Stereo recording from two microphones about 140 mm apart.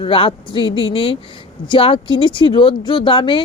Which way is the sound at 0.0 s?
40° left (ahead or behind).